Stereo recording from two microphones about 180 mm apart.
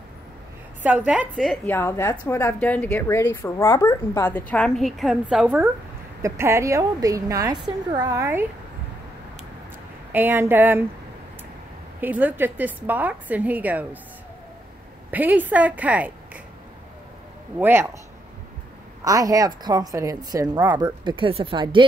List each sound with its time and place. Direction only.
0.8 s a woman's voice: 10° right (ahead or behind)
1.7 s a woman's voice: 15° left (ahead or behind); by 8.5 s 15° right (ahead or behind)
10.1 s a woman's voice: 10° right (ahead or behind)
12.0 s a woman's voice: 10° right (ahead or behind)
15.0 s a woman's voice: 10° right (ahead or behind)
17.6 s a woman's voice: 10° right (ahead or behind)
19.0 s a woman's voice: 20° right (ahead or behind)